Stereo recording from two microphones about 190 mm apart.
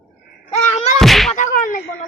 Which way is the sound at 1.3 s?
45° left (ahead or behind).